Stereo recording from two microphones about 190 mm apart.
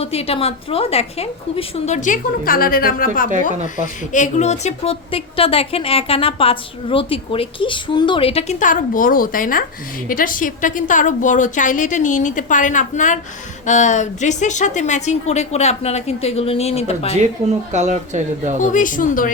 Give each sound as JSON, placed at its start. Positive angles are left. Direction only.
{"t": 0.0, "sound": "a woman's voice", "side_deg": 30}
{"t": 17.7, "sound": "speech", "side_deg": -40}
{"t": 18.6, "sound": "speech", "side_deg": 45}